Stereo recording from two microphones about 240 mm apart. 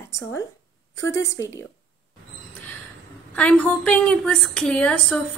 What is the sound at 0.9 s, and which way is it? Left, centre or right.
Speech, left.